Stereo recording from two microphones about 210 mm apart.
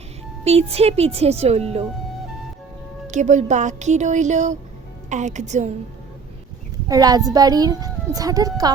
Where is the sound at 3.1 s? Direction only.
35° right (ahead or behind).